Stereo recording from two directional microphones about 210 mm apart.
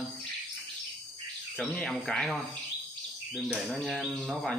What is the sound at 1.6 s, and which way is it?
Speech, 5° left (ahead or behind).